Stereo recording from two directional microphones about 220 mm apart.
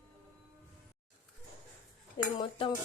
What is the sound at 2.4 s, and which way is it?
Dishes, 20° left (ahead or behind).